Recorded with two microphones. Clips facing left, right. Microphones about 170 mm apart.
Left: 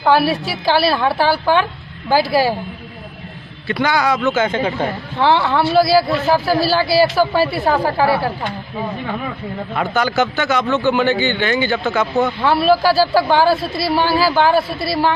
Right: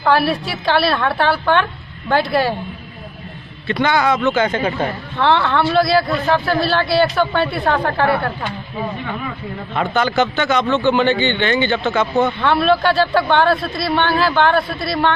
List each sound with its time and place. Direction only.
0.0 s speech: centre (ahead or behind)
3.6 s a man's voice: 5° left (ahead or behind)
9.8 s speech: 5° left (ahead or behind)
10.6 s a man's voice: 20° right (ahead or behind)
10.9 s a man's voice: 10° left (ahead or behind)